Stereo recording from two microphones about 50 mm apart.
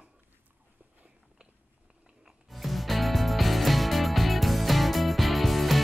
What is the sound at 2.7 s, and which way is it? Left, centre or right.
Music, centre.